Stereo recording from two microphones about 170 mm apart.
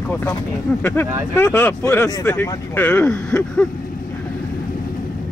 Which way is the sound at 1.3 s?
15° left (ahead or behind).